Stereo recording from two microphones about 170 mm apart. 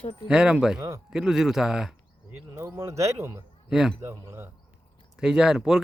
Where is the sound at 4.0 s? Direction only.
15° right (ahead or behind).